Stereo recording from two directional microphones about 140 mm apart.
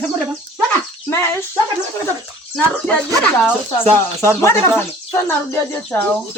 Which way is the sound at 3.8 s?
15° left (ahead or behind).